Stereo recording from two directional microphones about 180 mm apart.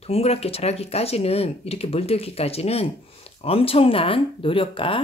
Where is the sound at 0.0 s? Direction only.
35° left (ahead or behind).